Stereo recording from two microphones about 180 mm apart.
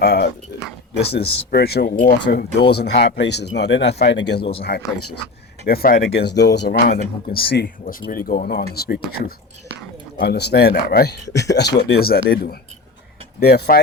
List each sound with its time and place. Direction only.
0.0 s speech: 60° left (ahead or behind)